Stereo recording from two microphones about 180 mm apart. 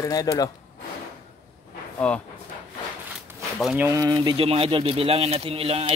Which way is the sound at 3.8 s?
20° right (ahead or behind).